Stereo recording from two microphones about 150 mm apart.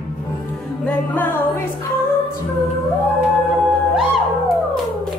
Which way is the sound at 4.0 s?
Centre (ahead or behind).